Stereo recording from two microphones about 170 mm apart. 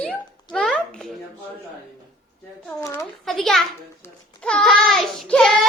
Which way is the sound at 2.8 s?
15° left (ahead or behind).